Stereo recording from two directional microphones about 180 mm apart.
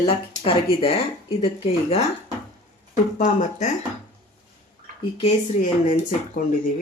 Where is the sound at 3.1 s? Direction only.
40° left (ahead or behind).